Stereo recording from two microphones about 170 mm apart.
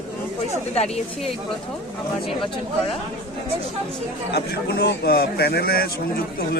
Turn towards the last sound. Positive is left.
turn(degrees=65)  # may be behind; listen again after turning